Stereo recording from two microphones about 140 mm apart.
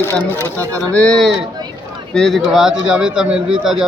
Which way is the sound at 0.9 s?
5° left (ahead or behind).